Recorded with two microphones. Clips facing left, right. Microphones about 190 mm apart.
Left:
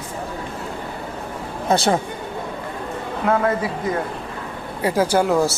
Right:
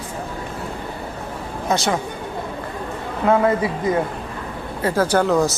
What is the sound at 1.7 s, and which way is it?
Speech, 30° left (ahead or behind).